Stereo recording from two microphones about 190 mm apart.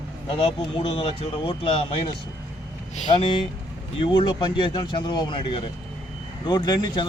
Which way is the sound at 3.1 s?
25° left (ahead or behind).